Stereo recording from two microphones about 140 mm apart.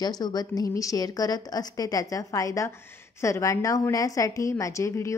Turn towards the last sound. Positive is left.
turn(degrees=20)  # may be behind; listen again after turning